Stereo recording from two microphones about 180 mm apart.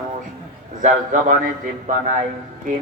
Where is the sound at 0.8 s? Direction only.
45° right (ahead or behind).